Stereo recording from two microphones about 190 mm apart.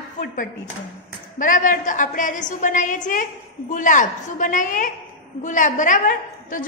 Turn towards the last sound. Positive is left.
turn(degrees=45)  # may be behind; listen again after turning